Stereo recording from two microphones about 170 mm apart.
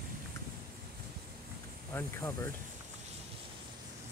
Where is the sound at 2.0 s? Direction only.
15° left (ahead or behind).